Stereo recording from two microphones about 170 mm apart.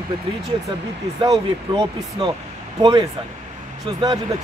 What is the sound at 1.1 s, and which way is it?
Speech, 25° right (ahead or behind).